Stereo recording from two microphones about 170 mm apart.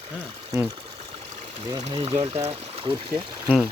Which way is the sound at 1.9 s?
35° right (ahead or behind).